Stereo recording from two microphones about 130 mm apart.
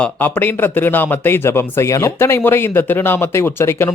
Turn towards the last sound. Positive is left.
turn(degrees=20)  # may be behind; listen again after turning